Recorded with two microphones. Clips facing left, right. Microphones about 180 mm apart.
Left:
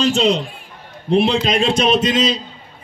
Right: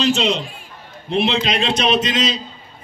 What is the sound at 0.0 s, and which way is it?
A man's voice, 45° left (ahead or behind).